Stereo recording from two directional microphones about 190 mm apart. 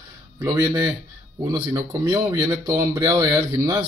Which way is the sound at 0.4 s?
15° right (ahead or behind).